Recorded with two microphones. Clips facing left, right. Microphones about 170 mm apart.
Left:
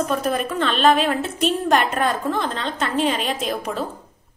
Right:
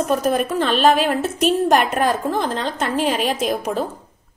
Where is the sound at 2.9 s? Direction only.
5° right (ahead or behind).